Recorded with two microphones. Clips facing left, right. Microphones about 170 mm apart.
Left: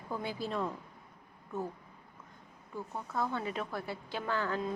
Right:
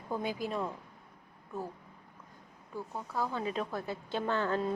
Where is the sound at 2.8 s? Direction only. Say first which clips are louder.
Even; 10° right (ahead or behind).